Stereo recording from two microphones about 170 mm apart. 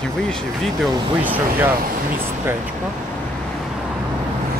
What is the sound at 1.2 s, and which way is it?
Speech, 10° right (ahead or behind).